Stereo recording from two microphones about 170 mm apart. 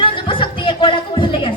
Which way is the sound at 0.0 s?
30° left (ahead or behind).